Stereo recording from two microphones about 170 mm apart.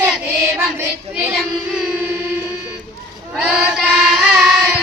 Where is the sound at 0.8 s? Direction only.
10° right (ahead or behind).